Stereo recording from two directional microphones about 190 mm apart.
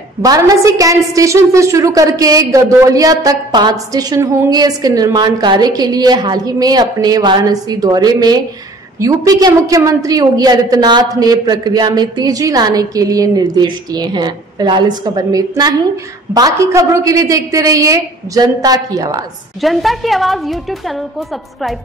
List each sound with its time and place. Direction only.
0.2 s a woman's voice: 20° right (ahead or behind)
19.6 s a woman's voice: centre (ahead or behind)